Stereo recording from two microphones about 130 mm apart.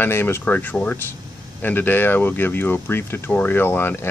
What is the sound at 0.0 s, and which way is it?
Speech, 20° left (ahead or behind).